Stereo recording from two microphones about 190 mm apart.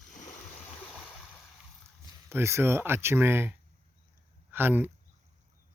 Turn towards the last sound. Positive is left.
turn(degrees=-10)  # may be behind; listen again after turning